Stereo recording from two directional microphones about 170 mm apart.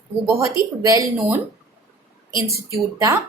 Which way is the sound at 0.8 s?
20° right (ahead or behind).